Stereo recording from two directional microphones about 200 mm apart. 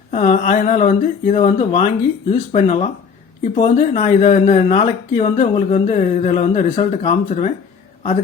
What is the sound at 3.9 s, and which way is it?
Speech, 40° left (ahead or behind).